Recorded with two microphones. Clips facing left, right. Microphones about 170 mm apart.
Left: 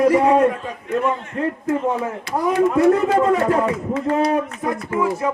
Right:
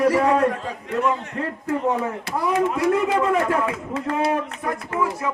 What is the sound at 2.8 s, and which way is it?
A man's voice, 40° left (ahead or behind).